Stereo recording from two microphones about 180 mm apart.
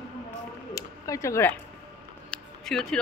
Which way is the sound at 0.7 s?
20° left (ahead or behind).